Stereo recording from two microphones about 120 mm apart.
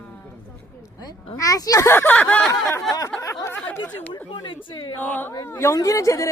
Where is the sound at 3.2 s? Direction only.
25° left (ahead or behind).